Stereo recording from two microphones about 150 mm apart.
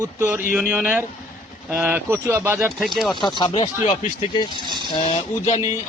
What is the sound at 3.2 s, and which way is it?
Speech, 30° left (ahead or behind).